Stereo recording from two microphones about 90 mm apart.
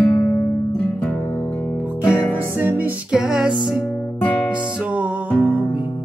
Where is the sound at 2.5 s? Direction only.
20° right (ahead or behind).